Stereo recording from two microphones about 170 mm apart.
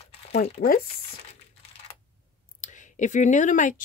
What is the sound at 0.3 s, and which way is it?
Speech, 70° left (ahead or behind).